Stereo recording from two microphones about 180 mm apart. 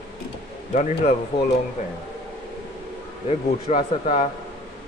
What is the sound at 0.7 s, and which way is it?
Speech, 40° left (ahead or behind).